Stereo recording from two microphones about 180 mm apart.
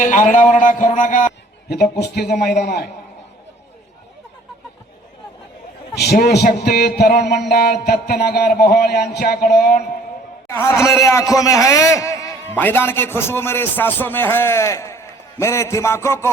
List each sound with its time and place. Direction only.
0.0 s speech: 45° left (ahead or behind)
1.7 s speech: 60° left (ahead or behind)
5.9 s speech: 65° left (ahead or behind)
10.5 s a man's voice: 15° left (ahead or behind)